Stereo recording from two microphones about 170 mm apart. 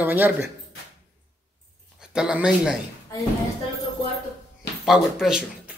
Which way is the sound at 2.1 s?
5° right (ahead or behind).